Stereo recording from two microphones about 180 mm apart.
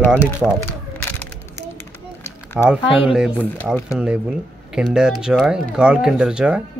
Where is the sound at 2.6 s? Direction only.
5° right (ahead or behind).